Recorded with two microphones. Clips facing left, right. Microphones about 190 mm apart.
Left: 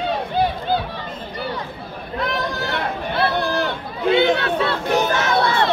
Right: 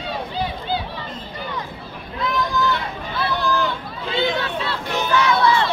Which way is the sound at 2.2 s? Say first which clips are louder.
Right 2 dB; 65° left (ahead or behind).